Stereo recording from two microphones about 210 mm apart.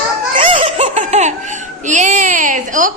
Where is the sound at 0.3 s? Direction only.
25° right (ahead or behind).